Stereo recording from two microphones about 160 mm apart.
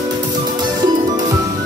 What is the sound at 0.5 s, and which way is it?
Music, 25° right (ahead or behind).